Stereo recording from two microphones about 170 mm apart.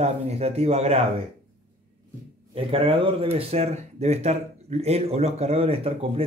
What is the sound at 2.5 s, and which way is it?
Speech, 35° right (ahead or behind).